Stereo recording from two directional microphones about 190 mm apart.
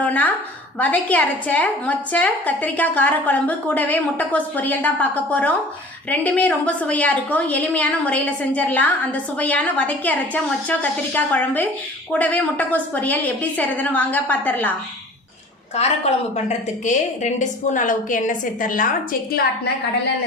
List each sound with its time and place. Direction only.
0.0 s a woman's voice: 10° left (ahead or behind)
15.7 s a woman's voice: 35° left (ahead or behind)